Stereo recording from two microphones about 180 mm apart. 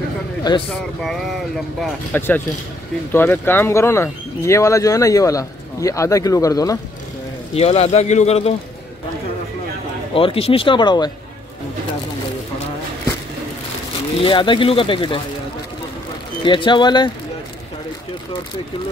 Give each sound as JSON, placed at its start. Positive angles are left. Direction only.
{"t": 0.4, "sound": "a man's voice", "side_deg": 25}
{"t": 1.0, "sound": "speech", "side_deg": 0}
{"t": 2.1, "sound": "speech", "side_deg": 10}
{"t": 7.5, "sound": "speech", "side_deg": 35}
{"t": 10.1, "sound": "speech", "side_deg": 30}
{"t": 14.2, "sound": "speech", "side_deg": 25}
{"t": 16.4, "sound": "speech", "side_deg": 25}